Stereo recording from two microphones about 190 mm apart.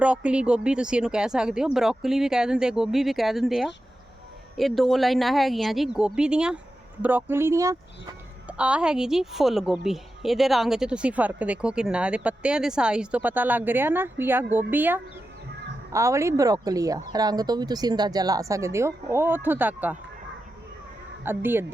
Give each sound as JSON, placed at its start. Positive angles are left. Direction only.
{"t": 0.0, "sound": "a woman's voice", "side_deg": -5}
{"t": 8.5, "sound": "a woman's voice", "side_deg": -5}
{"t": 21.2, "sound": "speech", "side_deg": -10}